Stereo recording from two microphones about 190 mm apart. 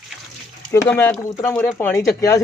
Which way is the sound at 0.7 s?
15° left (ahead or behind).